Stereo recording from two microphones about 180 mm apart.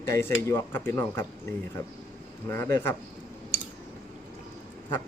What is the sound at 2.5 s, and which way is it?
Speech, 15° left (ahead or behind).